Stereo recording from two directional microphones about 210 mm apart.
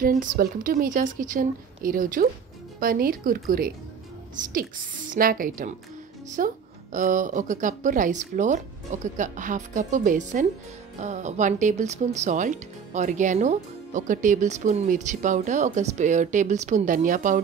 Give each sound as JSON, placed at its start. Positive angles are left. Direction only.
{"t": 0.0, "sound": "speech", "side_deg": -40}